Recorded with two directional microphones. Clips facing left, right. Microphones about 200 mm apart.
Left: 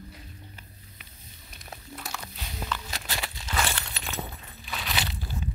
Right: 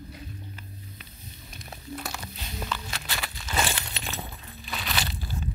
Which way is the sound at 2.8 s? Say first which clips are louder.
Even; 40° left (ahead or behind).